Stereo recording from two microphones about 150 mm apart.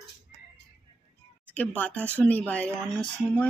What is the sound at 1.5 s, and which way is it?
Speech, 10° left (ahead or behind).